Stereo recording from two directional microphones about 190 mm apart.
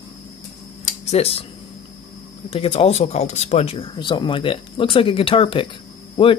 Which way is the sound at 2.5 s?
30° left (ahead or behind).